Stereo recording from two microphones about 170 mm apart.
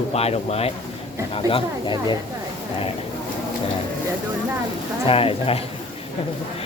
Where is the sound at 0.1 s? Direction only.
35° left (ahead or behind).